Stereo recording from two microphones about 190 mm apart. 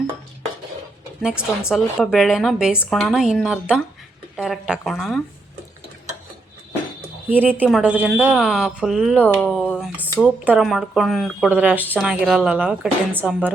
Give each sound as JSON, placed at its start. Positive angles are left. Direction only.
{"t": 1.2, "sound": "speech", "side_deg": -5}
{"t": 7.3, "sound": "a woman's voice", "side_deg": -10}